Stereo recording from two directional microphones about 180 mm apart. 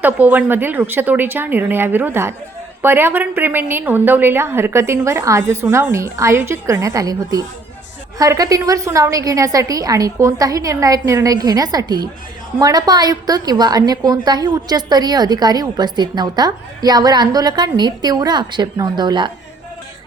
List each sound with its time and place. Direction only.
0.0 s a woman's voice: 10° right (ahead or behind)